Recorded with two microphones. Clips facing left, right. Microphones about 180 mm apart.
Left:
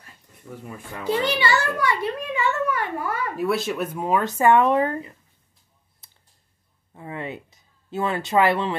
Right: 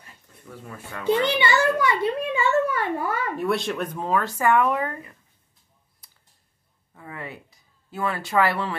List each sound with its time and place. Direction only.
1.3 s a child's voice: 20° right (ahead or behind)
3.3 s speech: 5° left (ahead or behind); by 4.9 s 30° left (ahead or behind)
6.0 s typing: 25° left (ahead or behind)
6.9 s a sound: 25° left (ahead or behind)